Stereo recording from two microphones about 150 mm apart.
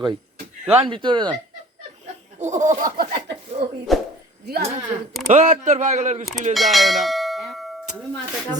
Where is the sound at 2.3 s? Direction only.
55° right (ahead or behind).